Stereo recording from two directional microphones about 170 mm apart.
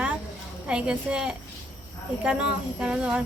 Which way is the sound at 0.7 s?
5° right (ahead or behind).